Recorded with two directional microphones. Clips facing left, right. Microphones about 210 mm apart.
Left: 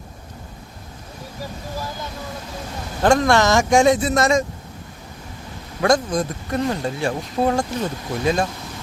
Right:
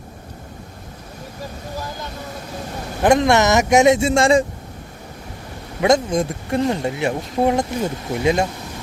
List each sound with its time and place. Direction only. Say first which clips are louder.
3.0 s speech: right 1 dB; 20° right (ahead or behind)
5.9 s speech: right 2 dB; 25° right (ahead or behind)